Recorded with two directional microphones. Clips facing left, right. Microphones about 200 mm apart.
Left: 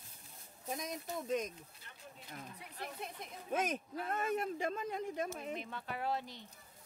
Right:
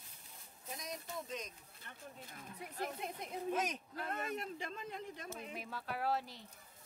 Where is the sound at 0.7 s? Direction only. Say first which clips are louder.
Left 5 dB; 55° left (ahead or behind).